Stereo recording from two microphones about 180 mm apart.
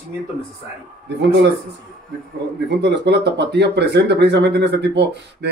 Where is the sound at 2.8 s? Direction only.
70° right (ahead or behind).